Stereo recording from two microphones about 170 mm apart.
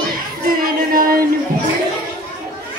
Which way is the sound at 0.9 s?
55° right (ahead or behind).